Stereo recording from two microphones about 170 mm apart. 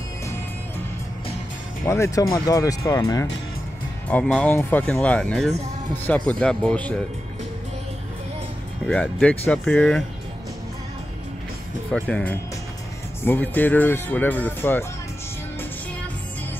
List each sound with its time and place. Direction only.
1.9 s speech: 15° left (ahead or behind)
4.4 s speech: 10° left (ahead or behind)
8.8 s speech: 5° left (ahead or behind)
11.9 s speech: 5° left (ahead or behind)